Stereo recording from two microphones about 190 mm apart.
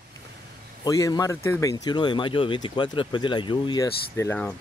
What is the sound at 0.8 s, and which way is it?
Speech, 20° left (ahead or behind).